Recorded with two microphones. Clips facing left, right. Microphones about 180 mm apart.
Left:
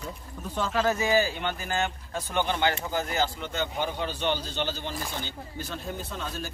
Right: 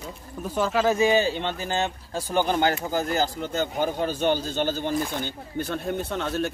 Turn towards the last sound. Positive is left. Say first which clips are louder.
# right 9 dB
turn(degrees=-70)  # may be behind; listen again after turning